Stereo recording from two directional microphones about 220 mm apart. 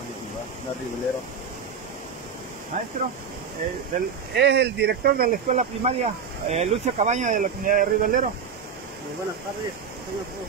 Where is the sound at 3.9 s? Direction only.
35° right (ahead or behind).